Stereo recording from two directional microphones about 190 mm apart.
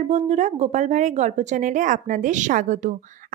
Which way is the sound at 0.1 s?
40° right (ahead or behind).